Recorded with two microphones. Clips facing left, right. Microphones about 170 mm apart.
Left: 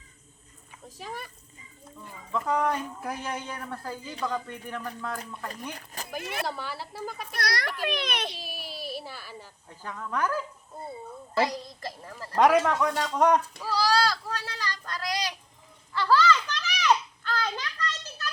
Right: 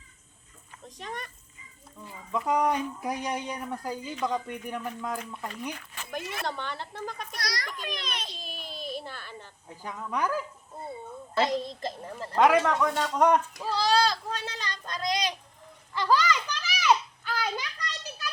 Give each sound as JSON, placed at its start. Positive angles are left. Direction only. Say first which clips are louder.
{"t": 0.9, "sound": "speech", "louder": "even", "side_deg": 5}
{"t": 2.3, "sound": "speech", "louder": "right 1 dB", "side_deg": -15}
{"t": 5.7, "sound": "speech", "louder": "left 2 dB", "side_deg": 40}
{"t": 6.4, "sound": "a man's voice", "louder": "left 1 dB", "side_deg": 5}
{"t": 7.3, "sound": "a child's voice", "louder": "left 5 dB", "side_deg": 60}
{"t": 8.4, "sound": "a sound", "louder": "left 1 dB", "side_deg": 5}
{"t": 9.6, "sound": "a woman's voice", "louder": "right 1 dB", "side_deg": -15}
{"t": 12.4, "sound": "a man's voice", "louder": "left 1 dB", "side_deg": 0}
{"t": 13.6, "sound": "a sound", "louder": "even", "side_deg": -20}